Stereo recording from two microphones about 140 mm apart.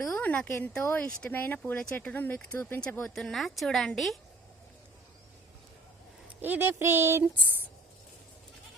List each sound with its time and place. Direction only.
0.1 s speech: 10° left (ahead or behind)
6.4 s speech: 15° right (ahead or behind)